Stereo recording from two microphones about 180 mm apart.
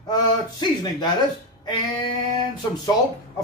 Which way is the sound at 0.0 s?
25° left (ahead or behind).